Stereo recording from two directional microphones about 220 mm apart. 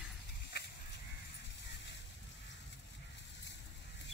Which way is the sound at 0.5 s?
50° left (ahead or behind).